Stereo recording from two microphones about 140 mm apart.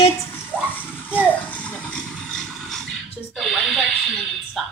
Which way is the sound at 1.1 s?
10° right (ahead or behind).